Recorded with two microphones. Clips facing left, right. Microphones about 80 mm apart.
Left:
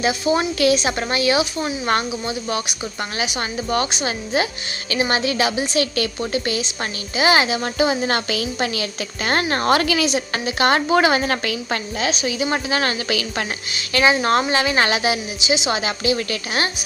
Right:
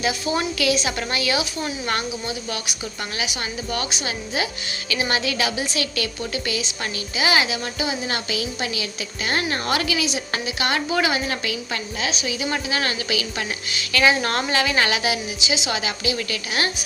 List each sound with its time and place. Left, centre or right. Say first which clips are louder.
0.0 s a woman's voice: left 4 dB; left
13.7 s speech: left 2 dB; left
15.8 s a woman's voice: left 4 dB; left